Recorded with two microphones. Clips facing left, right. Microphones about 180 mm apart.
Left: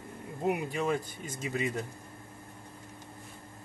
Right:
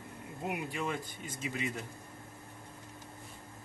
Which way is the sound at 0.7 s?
45° left (ahead or behind).